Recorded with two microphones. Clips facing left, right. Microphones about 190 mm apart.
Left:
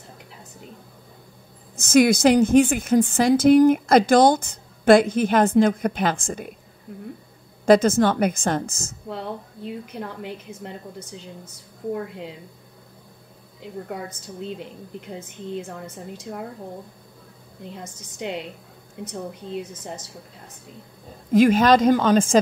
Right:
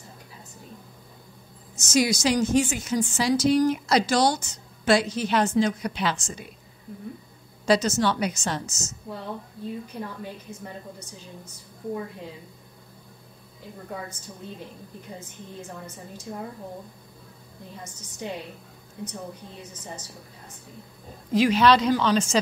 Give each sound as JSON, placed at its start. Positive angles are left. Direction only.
{"t": 1.8, "sound": "a woman's voice", "side_deg": 55}
{"t": 7.6, "sound": "a woman's voice", "side_deg": 55}
{"t": 9.9, "sound": "a woman's voice", "side_deg": 75}
{"t": 21.3, "sound": "a woman's voice", "side_deg": 50}